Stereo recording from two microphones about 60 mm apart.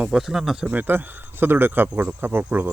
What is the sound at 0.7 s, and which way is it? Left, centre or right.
Speech, right.